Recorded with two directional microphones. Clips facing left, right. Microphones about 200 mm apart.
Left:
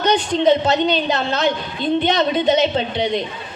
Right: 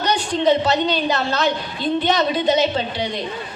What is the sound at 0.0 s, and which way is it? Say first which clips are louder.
A man's voice: left 3 dB; 20° left (ahead or behind).